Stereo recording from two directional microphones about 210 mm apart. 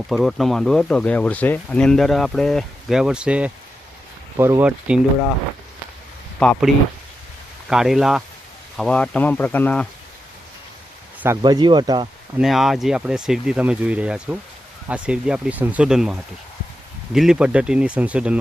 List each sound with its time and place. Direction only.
0.1 s speech: centre (ahead or behind)
6.4 s speech: 5° left (ahead or behind)
7.7 s speech: centre (ahead or behind)
11.2 s speech: 15° right (ahead or behind)
12.4 s speech: centre (ahead or behind)